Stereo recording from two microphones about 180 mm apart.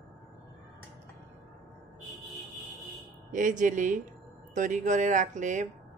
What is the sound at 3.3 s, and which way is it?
A woman's voice, 45° right (ahead or behind).